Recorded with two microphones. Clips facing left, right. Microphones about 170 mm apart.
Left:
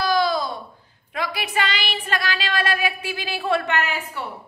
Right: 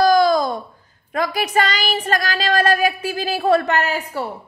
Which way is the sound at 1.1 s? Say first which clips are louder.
Right 6 dB; 45° right (ahead or behind).